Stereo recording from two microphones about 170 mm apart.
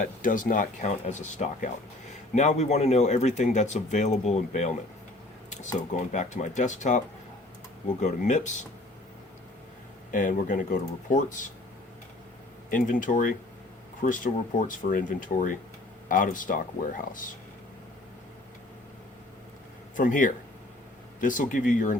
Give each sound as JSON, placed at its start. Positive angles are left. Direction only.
{"t": 0.0, "sound": "speech", "side_deg": 50}
{"t": 8.0, "sound": "speech", "side_deg": 45}
{"t": 10.1, "sound": "speech", "side_deg": 50}
{"t": 12.7, "sound": "speech", "side_deg": 50}
{"t": 14.0, "sound": "speech", "side_deg": 40}
{"t": 14.7, "sound": "speech", "side_deg": 50}
{"t": 20.0, "sound": "speech", "side_deg": 50}